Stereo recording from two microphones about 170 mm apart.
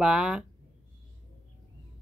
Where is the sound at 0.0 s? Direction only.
5° right (ahead or behind).